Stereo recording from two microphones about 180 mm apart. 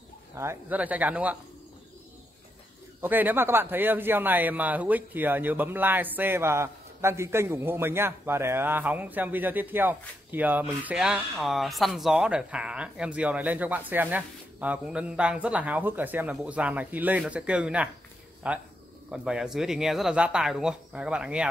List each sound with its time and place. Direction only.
0.4 s a man's voice: 10° right (ahead or behind)
3.0 s a man's voice: 10° right (ahead or behind)